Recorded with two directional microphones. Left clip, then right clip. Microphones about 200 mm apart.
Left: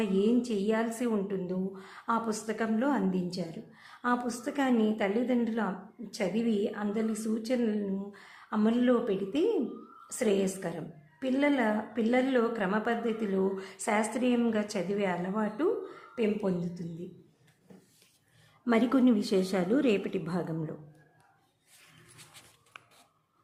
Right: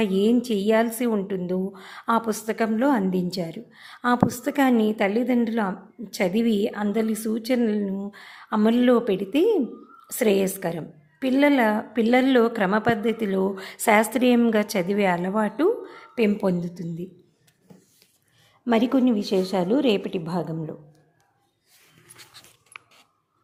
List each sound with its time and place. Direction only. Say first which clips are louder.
0.0 s a woman's voice: right 6 dB; 30° right (ahead or behind)
18.6 s a woman's voice: right 5 dB; 15° right (ahead or behind)